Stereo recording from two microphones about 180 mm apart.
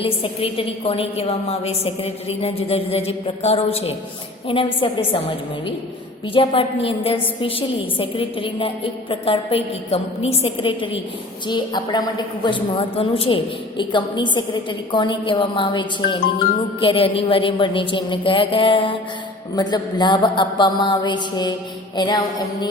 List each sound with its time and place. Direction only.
0.0 s a woman's voice: 30° left (ahead or behind)
6.3 s a woman's voice: 30° left (ahead or behind)